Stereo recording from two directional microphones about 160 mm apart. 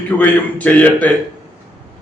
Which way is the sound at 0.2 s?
10° left (ahead or behind).